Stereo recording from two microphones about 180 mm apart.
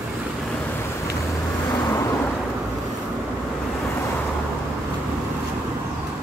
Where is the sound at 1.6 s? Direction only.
15° left (ahead or behind).